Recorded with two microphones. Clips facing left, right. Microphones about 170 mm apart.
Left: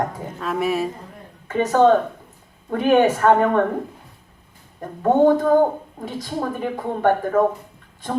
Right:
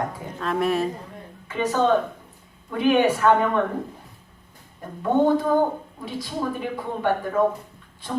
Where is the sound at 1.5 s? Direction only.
50° left (ahead or behind).